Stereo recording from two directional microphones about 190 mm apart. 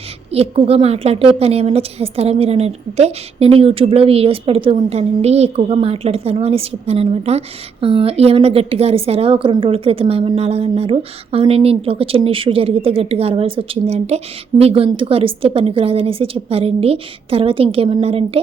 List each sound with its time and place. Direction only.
0.3 s a woman's voice: 30° right (ahead or behind)